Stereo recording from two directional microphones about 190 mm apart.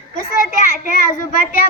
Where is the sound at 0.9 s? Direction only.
45° left (ahead or behind).